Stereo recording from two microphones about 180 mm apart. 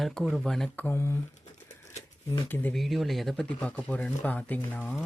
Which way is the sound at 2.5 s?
10° left (ahead or behind).